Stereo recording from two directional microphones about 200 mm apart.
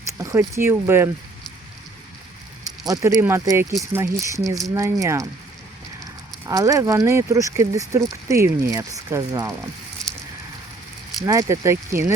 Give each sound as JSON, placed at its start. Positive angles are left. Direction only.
{"t": 0.2, "sound": "speech", "side_deg": -15}
{"t": 2.8, "sound": "speech", "side_deg": -15}
{"t": 6.5, "sound": "speech", "side_deg": -15}
{"t": 11.3, "sound": "speech", "side_deg": -15}